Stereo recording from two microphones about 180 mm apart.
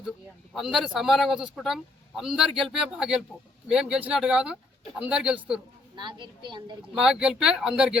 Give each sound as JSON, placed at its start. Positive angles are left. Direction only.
{"t": 0.5, "sound": "speech", "side_deg": 0}
{"t": 6.0, "sound": "a woman's voice", "side_deg": -25}
{"t": 6.9, "sound": "speech", "side_deg": -5}